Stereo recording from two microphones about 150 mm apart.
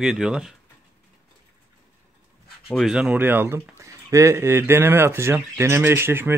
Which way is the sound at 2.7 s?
Centre (ahead or behind).